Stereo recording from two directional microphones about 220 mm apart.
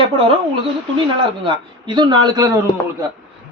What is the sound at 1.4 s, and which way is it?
Speech, 20° right (ahead or behind).